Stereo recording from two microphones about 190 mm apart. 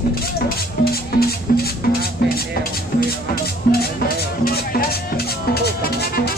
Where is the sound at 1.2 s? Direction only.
55° left (ahead or behind).